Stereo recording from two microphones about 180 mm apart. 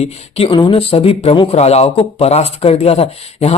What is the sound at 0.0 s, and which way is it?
Speech, 30° left (ahead or behind).